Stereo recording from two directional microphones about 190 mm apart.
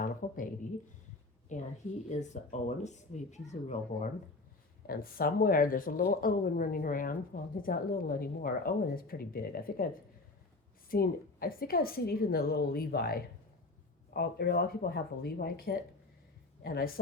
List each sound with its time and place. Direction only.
0.0 s speech: 45° left (ahead or behind)
1.5 s speech: 40° left (ahead or behind)
4.9 s speech: 50° left (ahead or behind)